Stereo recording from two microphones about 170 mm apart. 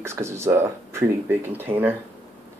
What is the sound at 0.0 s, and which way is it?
Speech, 15° right (ahead or behind).